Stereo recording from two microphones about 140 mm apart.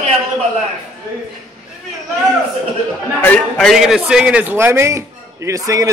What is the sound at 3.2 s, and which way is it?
A man's voice, 10° left (ahead or behind).